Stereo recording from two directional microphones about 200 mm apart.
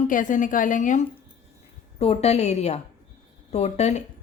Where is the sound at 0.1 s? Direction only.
40° left (ahead or behind).